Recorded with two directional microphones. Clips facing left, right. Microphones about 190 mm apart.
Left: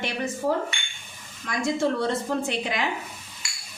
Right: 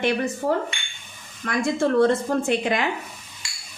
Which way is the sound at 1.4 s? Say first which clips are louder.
Right 2 dB; 55° right (ahead or behind).